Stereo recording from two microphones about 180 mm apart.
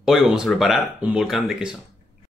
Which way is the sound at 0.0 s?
5° right (ahead or behind).